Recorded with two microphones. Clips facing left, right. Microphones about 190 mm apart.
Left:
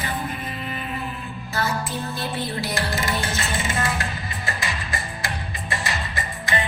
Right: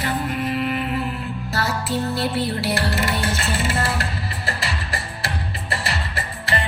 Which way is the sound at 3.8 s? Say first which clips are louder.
Right 2 dB; 35° right (ahead or behind).